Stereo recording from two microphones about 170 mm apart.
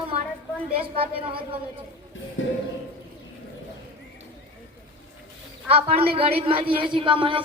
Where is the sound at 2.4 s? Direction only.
90° left.